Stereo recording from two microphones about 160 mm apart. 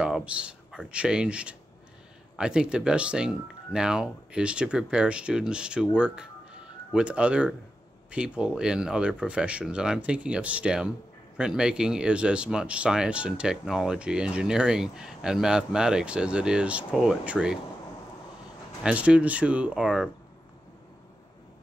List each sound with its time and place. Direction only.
0.0 s speech: 5° right (ahead or behind)
18.8 s speech: 5° right (ahead or behind)